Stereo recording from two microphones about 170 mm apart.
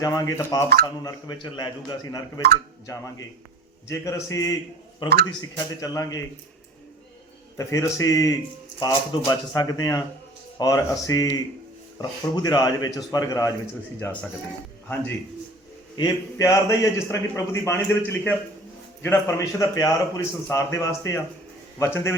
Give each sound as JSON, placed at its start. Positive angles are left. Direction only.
{"t": 0.0, "sound": "a man's voice", "side_deg": 20}
{"t": 7.5, "sound": "a man's voice", "side_deg": 20}
{"t": 14.0, "sound": "a man's voice", "side_deg": 10}
{"t": 16.0, "sound": "a man's voice", "side_deg": 20}